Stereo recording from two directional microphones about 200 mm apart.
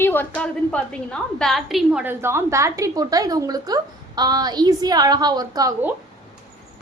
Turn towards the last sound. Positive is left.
turn(degrees=-15)  # may be behind; listen again after turning